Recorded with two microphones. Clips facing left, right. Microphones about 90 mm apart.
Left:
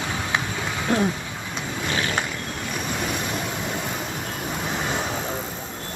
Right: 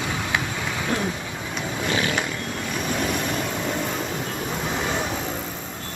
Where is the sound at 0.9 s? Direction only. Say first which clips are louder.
Left 5 dB; 25° left (ahead or behind).